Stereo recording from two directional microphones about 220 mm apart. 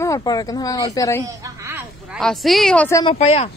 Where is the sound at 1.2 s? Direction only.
15° right (ahead or behind); by 3.0 s 5° left (ahead or behind).